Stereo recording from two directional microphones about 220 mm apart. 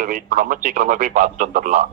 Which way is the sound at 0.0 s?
40° right (ahead or behind).